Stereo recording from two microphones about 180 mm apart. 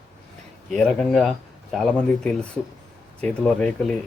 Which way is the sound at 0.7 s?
Centre (ahead or behind).